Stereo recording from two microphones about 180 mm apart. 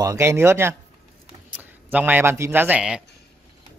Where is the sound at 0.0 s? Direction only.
20° right (ahead or behind).